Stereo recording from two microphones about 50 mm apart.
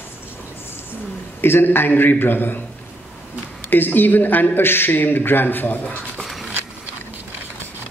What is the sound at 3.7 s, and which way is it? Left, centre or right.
A man's voice, left.